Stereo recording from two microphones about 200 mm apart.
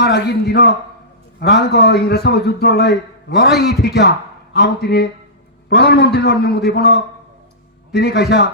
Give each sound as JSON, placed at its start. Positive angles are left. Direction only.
{"t": 0.0, "sound": "a man's voice", "side_deg": 55}